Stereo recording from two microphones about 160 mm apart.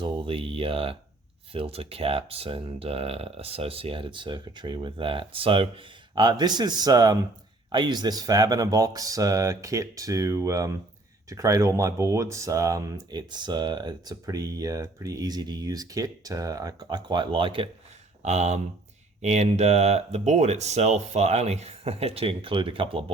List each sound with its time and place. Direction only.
0.0 s speech: 30° right (ahead or behind)
18.2 s speech: 45° right (ahead or behind)